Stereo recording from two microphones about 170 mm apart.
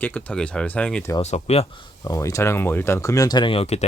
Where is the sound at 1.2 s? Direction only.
40° left (ahead or behind).